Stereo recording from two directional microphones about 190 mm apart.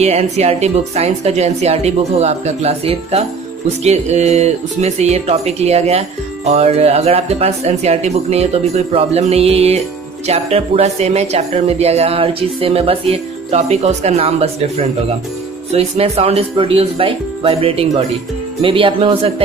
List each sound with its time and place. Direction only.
0.0 s speech: 35° right (ahead or behind)